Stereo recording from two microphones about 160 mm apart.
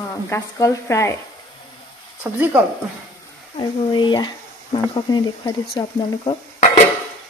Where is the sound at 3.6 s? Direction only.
30° left (ahead or behind).